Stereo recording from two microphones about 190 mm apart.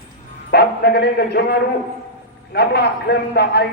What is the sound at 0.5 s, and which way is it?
A man's voice, 60° left (ahead or behind).